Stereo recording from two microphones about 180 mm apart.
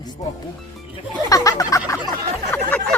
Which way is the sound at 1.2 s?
20° left (ahead or behind).